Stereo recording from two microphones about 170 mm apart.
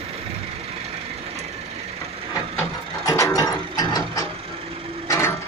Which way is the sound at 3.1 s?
20° left (ahead or behind).